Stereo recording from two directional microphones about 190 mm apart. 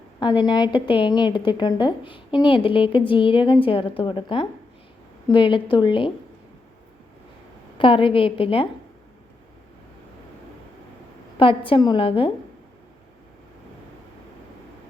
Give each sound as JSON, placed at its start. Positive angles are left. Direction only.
{"t": 0.2, "sound": "a woman's voice", "side_deg": 25}
{"t": 7.8, "sound": "a woman's voice", "side_deg": 25}
{"t": 11.3, "sound": "a woman's voice", "side_deg": 30}